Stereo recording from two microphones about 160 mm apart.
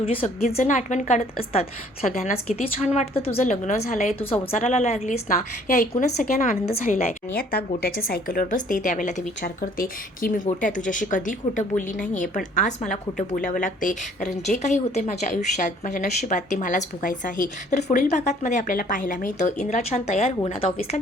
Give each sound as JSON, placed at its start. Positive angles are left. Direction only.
{"t": 0.0, "sound": "a woman's voice", "side_deg": 35}
{"t": 0.6, "sound": "speech", "side_deg": 50}
{"t": 4.2, "sound": "a woman's voice", "side_deg": 40}
{"t": 9.4, "sound": "speech", "side_deg": 65}